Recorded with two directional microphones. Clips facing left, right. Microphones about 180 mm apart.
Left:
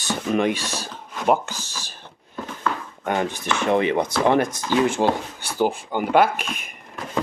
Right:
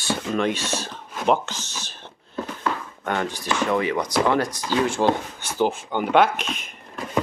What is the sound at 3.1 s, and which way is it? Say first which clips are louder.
Speech: left 2 dB; 20° left (ahead or behind).